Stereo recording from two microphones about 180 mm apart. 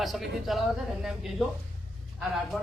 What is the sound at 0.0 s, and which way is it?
Speech, centre (ahead or behind).